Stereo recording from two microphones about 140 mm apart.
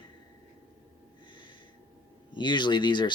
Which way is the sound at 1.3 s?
35° left (ahead or behind).